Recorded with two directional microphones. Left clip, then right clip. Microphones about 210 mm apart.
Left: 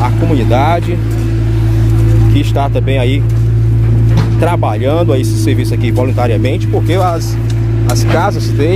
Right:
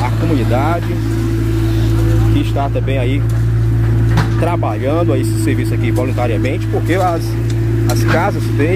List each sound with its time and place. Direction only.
0.0 s vehicle: 35° left (ahead or behind)
2.3 s speech: 35° left (ahead or behind)
4.4 s speech: 30° left (ahead or behind)